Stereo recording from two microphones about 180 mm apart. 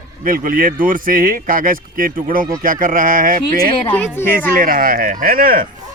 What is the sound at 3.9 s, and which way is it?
Speech, 10° left (ahead or behind).